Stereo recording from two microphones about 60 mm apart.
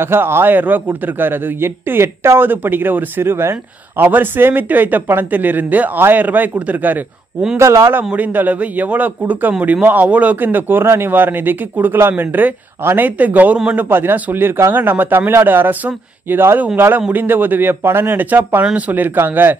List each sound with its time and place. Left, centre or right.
0.0 s a man's voice: right
7.5 s speech: right
8.0 s a man's voice: right
13.8 s a man's voice: right